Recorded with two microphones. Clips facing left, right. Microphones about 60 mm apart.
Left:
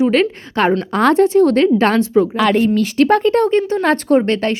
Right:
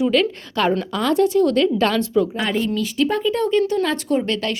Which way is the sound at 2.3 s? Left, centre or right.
Left.